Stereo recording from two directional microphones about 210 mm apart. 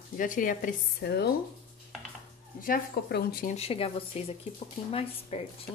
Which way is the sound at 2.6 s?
45° left (ahead or behind).